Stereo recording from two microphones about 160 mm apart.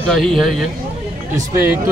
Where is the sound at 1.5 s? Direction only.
15° right (ahead or behind).